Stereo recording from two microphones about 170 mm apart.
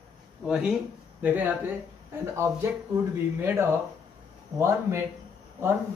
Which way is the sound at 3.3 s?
15° right (ahead or behind).